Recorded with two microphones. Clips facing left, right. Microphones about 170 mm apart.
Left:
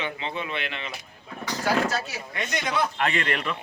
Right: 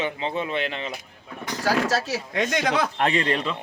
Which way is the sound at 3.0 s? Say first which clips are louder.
Right 4 dB; 30° right (ahead or behind).